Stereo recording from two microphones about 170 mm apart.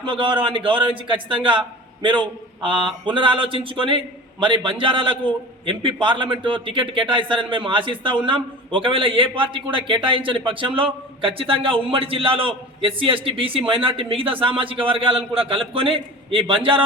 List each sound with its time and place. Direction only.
0.0 s a man's voice: 30° right (ahead or behind)